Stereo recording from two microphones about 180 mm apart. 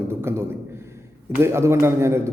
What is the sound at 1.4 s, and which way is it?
Speech, 15° right (ahead or behind).